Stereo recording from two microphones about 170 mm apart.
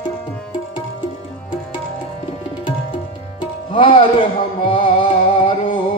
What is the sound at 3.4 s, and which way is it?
Music, 30° left (ahead or behind).